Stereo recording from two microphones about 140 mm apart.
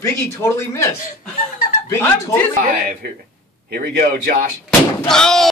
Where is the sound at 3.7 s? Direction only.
90° right.